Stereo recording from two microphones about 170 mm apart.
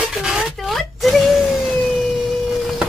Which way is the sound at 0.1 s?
5° right (ahead or behind).